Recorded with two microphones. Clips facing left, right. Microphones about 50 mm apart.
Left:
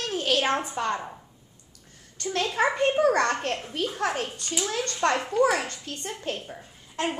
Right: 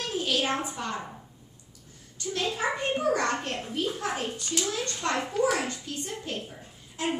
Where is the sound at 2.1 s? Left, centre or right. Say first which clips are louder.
Left 5 dB; left.